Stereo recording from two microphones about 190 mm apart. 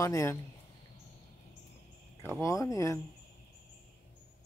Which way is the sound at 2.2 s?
15° left (ahead or behind).